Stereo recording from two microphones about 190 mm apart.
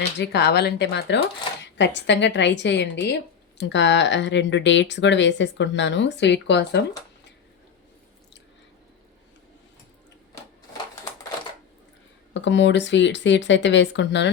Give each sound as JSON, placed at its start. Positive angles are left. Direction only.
{"t": 0.2, "sound": "speech", "side_deg": 60}
{"t": 12.3, "sound": "speech", "side_deg": 70}